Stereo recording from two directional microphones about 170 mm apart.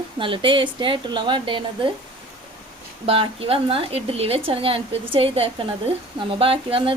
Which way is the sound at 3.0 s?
35° right (ahead or behind).